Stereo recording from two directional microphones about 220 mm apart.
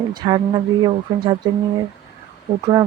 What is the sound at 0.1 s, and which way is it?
Speech, 20° right (ahead or behind).